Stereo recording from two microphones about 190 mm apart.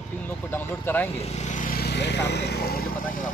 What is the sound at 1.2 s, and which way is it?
Speech, 35° left (ahead or behind).